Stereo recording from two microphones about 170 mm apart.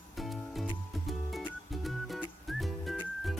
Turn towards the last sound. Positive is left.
turn(degrees=0)  # may be behind; listen again after turning